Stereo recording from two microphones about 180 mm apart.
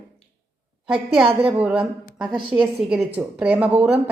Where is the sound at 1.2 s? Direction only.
30° right (ahead or behind).